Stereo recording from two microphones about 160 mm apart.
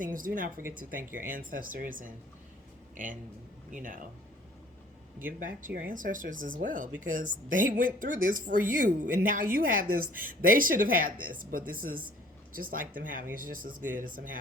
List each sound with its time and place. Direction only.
0.0 s a woman's voice: 60° right (ahead or behind)
5.4 s a woman's voice: 60° right (ahead or behind)